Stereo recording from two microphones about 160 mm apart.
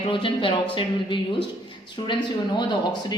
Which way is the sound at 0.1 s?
30° left (ahead or behind).